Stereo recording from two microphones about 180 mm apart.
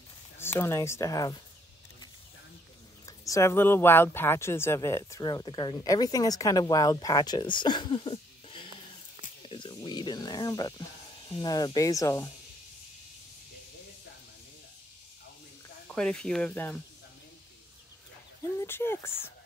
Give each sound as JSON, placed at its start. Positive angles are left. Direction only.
{"t": 0.4, "sound": "speech", "side_deg": 15}
{"t": 3.1, "sound": "speech", "side_deg": 15}
{"t": 15.9, "sound": "speech", "side_deg": 5}
{"t": 18.6, "sound": "speech", "side_deg": 15}